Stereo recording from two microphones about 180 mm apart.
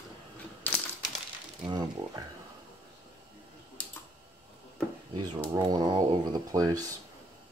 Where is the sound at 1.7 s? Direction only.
20° right (ahead or behind).